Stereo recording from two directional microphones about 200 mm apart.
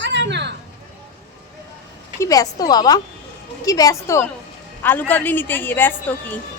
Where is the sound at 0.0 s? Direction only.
60° right (ahead or behind).